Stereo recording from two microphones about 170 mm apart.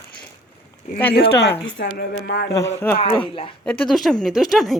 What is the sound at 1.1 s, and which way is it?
Speech, 70° left (ahead or behind).